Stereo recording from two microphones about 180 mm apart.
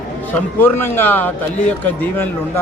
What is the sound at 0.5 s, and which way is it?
A man's voice, 10° left (ahead or behind).